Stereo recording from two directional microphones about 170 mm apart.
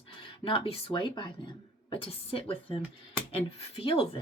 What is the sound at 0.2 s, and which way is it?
Speech, 30° left (ahead or behind).